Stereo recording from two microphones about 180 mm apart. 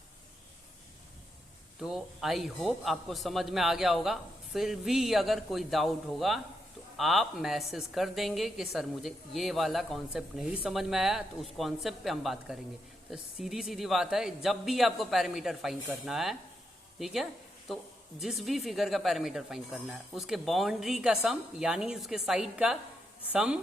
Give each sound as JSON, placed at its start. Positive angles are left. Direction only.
{"t": 1.8, "sound": "speech", "side_deg": 0}